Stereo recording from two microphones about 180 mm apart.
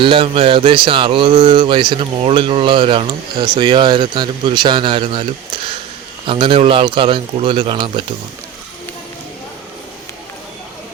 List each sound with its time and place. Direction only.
0.0 s speech: 30° right (ahead or behind)
6.2 s speech: 30° right (ahead or behind)